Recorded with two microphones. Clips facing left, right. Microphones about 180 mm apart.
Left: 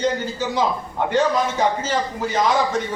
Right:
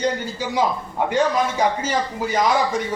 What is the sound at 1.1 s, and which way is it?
A man's voice, 10° right (ahead or behind).